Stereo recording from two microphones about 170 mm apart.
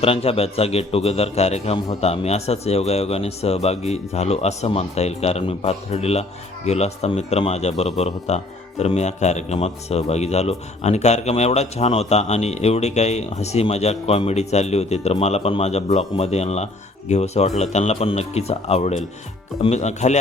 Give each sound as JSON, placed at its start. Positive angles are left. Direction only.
{"t": 0.0, "sound": "speech", "side_deg": 35}